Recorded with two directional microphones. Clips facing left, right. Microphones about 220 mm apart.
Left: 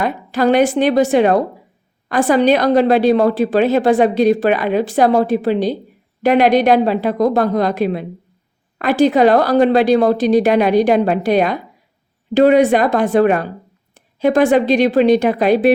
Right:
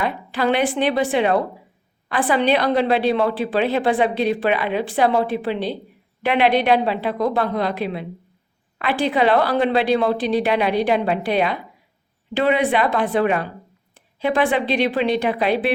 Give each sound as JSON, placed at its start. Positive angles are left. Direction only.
{"t": 0.0, "sound": "a woman's voice", "side_deg": 45}